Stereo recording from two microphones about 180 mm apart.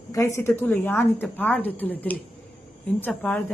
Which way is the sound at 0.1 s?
15° left (ahead or behind).